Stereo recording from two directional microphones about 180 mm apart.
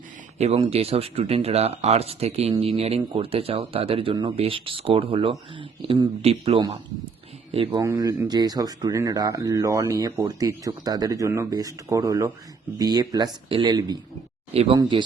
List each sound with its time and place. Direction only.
0.3 s speech: 35° right (ahead or behind)
14.5 s speech: 35° right (ahead or behind)